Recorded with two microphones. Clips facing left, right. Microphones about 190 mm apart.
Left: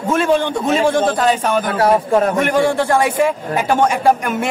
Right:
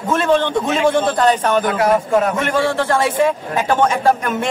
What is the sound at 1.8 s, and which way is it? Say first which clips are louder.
Speech: left 1 dB; 35° left (ahead or behind).